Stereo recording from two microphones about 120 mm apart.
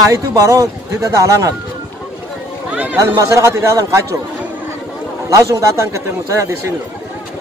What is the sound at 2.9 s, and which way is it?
A man's voice, 25° right (ahead or behind).